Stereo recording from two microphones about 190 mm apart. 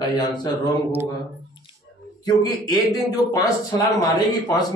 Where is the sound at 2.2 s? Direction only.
20° left (ahead or behind).